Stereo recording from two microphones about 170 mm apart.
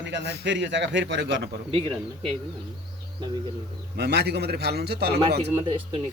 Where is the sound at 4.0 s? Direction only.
80° right.